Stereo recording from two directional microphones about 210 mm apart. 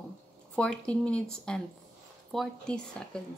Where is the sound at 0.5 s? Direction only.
5° left (ahead or behind).